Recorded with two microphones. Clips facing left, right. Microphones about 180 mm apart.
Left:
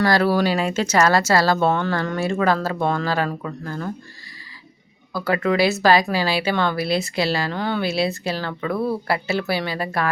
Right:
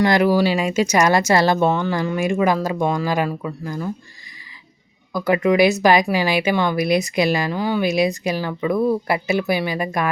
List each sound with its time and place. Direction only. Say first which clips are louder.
0.0 s speech: right 2 dB; 15° right (ahead or behind)
5.1 s speech: right 4 dB; 15° right (ahead or behind)